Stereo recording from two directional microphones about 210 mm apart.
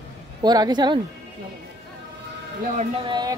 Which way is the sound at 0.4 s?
20° right (ahead or behind).